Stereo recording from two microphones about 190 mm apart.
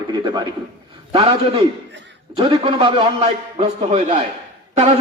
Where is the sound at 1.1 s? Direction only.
30° right (ahead or behind).